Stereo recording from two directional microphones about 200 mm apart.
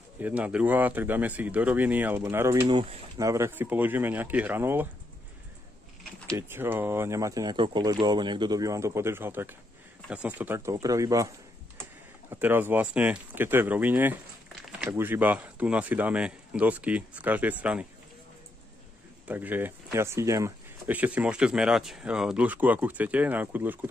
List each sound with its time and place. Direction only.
0.2 s speech: 5° right (ahead or behind)
2.7 s speech: 25° right (ahead or behind)
3.2 s speech: 15° right (ahead or behind)
6.3 s speech: 10° right (ahead or behind)
19.2 s speech: 10° right (ahead or behind)